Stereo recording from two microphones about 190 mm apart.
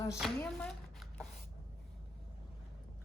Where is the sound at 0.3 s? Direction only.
5° left (ahead or behind).